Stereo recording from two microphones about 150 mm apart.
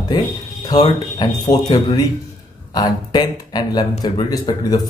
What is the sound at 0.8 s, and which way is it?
Speech, 30° left (ahead or behind).